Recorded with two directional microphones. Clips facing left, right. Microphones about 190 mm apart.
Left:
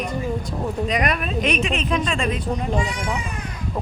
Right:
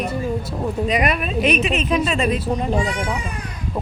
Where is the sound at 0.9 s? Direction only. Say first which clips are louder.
Right 3 dB; 10° right (ahead or behind).